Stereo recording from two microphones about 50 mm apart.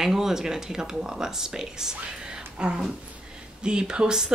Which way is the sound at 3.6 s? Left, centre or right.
Centre.